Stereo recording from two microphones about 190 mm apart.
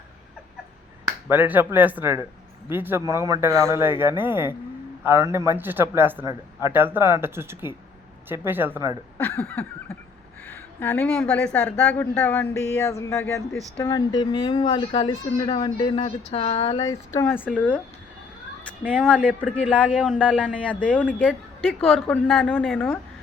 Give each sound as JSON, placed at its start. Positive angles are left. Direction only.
{"t": 1.3, "sound": "speech", "side_deg": -10}
{"t": 9.1, "sound": "a woman's voice", "side_deg": 10}
{"t": 13.5, "sound": "speech", "side_deg": 0}
{"t": 13.8, "sound": "speech", "side_deg": 20}
{"t": 17.2, "sound": "a woman's voice", "side_deg": 10}
{"t": 18.9, "sound": "speech", "side_deg": 5}
{"t": 19.9, "sound": "speech", "side_deg": -5}
{"t": 20.1, "sound": "a woman's voice", "side_deg": 5}
{"t": 21.1, "sound": "speech", "side_deg": -5}